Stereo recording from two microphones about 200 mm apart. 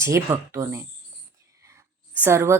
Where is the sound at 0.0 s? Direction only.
15° right (ahead or behind).